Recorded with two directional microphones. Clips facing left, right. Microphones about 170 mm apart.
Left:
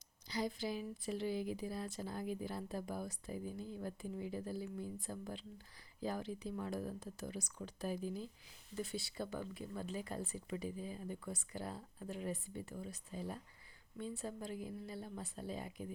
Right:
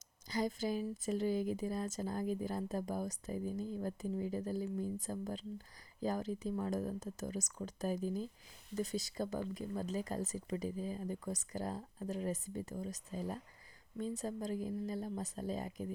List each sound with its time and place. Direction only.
0.3 s speech: 45° right (ahead or behind)